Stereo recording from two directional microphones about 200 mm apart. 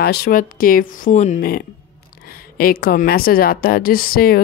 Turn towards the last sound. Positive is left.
turn(degrees=50)  # may be behind; listen again after turning